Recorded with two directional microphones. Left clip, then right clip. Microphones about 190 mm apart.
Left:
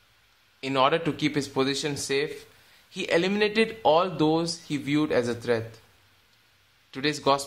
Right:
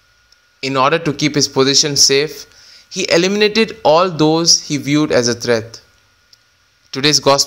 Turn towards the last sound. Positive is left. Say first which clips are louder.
# right 12 dB
turn(degrees=-35)  # may be behind; listen again after turning